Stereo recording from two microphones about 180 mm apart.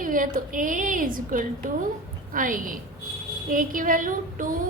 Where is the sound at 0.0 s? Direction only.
50° right (ahead or behind).